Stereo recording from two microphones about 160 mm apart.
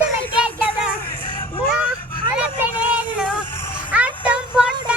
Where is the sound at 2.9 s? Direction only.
10° right (ahead or behind).